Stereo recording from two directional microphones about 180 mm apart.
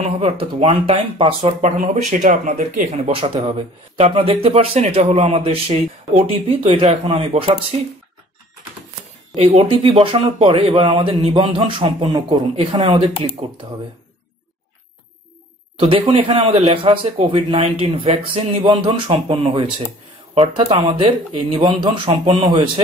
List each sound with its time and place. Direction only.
0.0 s speech: 35° right (ahead or behind)
1.6 s speech: 45° right (ahead or behind)
3.1 s speech: 30° right (ahead or behind)
9.3 s speech: 35° right (ahead or behind)
15.8 s speech: 30° right (ahead or behind)